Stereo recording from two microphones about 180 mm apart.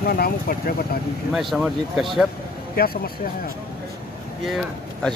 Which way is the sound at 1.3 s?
Centre (ahead or behind).